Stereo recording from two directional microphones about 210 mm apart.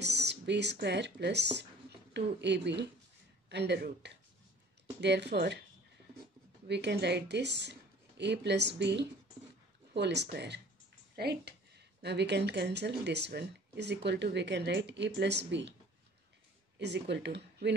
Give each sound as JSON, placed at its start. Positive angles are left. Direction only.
{"t": 0.0, "sound": "speech", "side_deg": -55}
{"t": 6.7, "sound": "speech", "side_deg": -55}
{"t": 16.7, "sound": "speech", "side_deg": -55}